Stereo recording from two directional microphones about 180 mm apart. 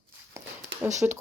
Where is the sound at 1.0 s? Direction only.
15° right (ahead or behind).